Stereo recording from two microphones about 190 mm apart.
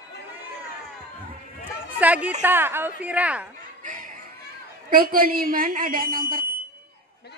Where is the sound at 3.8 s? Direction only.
45° right (ahead or behind).